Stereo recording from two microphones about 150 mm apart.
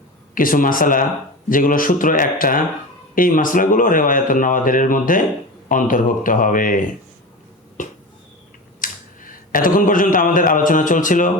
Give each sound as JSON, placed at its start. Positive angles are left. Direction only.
{"t": 0.3, "sound": "speech", "side_deg": 65}
{"t": 8.8, "sound": "speech", "side_deg": 65}